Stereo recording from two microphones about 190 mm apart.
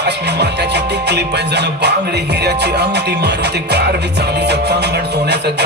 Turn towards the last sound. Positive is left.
turn(degrees=-65)  # may be behind; listen again after turning